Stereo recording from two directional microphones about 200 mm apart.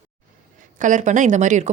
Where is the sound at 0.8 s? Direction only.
40° right (ahead or behind).